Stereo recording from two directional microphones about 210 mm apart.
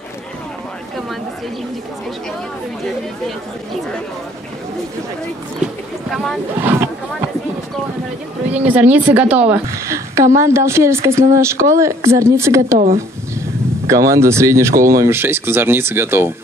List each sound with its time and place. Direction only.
6.0 s speech: centre (ahead or behind)
6.6 s speech: 10° right (ahead or behind)
8.6 s speech: 10° right (ahead or behind)
12.7 s speech: 40° right (ahead or behind)
14.1 s speech: 15° right (ahead or behind)